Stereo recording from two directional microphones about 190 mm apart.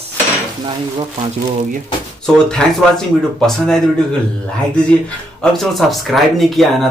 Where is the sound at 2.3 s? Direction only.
5° left (ahead or behind).